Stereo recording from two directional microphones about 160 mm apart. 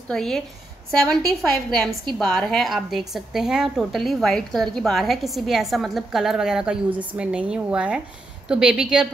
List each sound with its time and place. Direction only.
0.1 s a woman's voice: 5° left (ahead or behind)